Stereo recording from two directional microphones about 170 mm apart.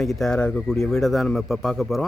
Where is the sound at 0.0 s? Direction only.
Centre (ahead or behind).